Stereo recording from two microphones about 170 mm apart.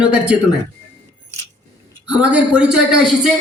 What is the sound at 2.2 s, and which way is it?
A man's voice, 5° right (ahead or behind).